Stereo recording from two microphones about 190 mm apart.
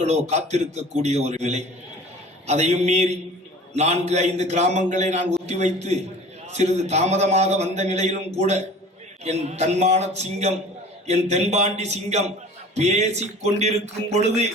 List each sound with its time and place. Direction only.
0.0 s a man's voice: 35° right (ahead or behind)